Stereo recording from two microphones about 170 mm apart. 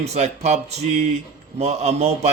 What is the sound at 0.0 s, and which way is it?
Speech, 40° right (ahead or behind).